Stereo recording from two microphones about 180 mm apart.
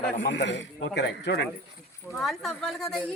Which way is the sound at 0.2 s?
70° left (ahead or behind).